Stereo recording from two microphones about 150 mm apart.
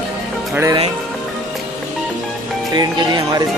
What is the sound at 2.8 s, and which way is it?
Speech, 25° right (ahead or behind).